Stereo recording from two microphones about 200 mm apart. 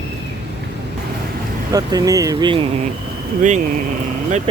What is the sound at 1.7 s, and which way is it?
Speech, 20° right (ahead or behind).